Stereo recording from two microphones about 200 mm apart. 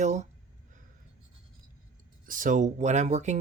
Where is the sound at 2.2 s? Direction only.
40° right (ahead or behind).